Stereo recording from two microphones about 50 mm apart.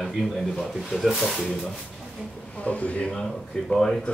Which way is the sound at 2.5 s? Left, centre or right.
Left.